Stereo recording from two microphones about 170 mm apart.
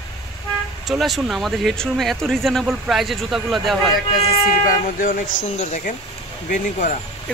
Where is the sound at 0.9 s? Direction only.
Centre (ahead or behind).